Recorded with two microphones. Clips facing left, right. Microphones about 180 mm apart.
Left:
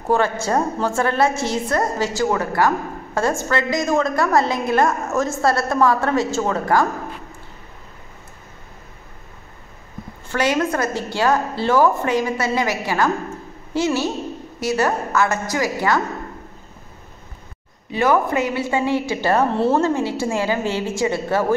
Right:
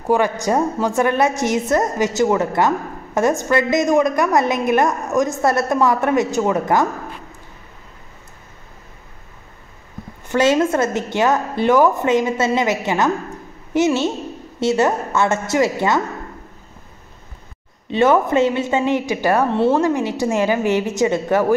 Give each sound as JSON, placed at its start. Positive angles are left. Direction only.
{"t": 0.0, "sound": "a woman's voice", "side_deg": -15}
{"t": 10.2, "sound": "a woman's voice", "side_deg": -20}
{"t": 17.8, "sound": "a woman's voice", "side_deg": -25}